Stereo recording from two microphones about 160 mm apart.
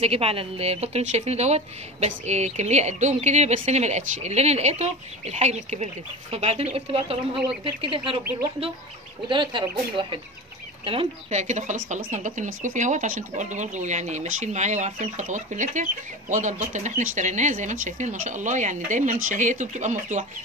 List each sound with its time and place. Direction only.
0.0 s a woman's voice: 40° right (ahead or behind)
9.3 s a woman's voice: 30° right (ahead or behind)
10.9 s speech: 40° right (ahead or behind)